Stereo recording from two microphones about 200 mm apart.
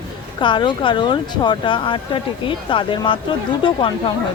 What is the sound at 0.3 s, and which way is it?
Speech, 25° left (ahead or behind).